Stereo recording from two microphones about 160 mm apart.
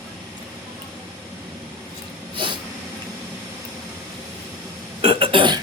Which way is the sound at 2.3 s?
30° right (ahead or behind).